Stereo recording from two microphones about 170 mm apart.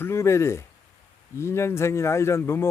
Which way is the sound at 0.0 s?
15° left (ahead or behind).